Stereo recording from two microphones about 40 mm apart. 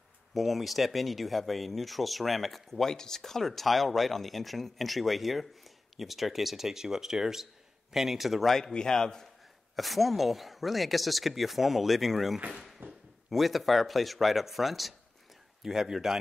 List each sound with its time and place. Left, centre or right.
0.3 s speech: centre
8.7 s a man's voice: centre
9.8 s speech: centre
12.8 s a sound: right
13.3 s a man's voice: centre